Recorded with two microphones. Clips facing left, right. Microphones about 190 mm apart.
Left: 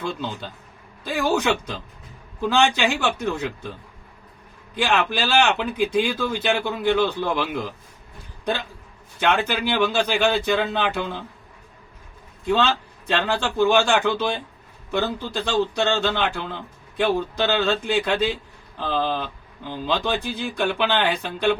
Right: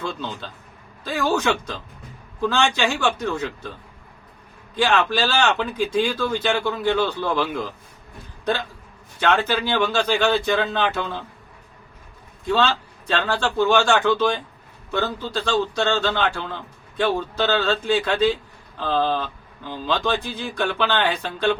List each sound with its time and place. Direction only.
0.0 s a man's voice: 15° left (ahead or behind)
4.7 s a man's voice: 15° left (ahead or behind)
9.2 s a man's voice: 15° left (ahead or behind)
13.1 s a man's voice: 15° left (ahead or behind)